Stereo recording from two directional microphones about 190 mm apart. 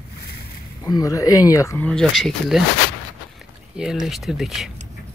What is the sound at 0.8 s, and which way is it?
Speech, 20° left (ahead or behind).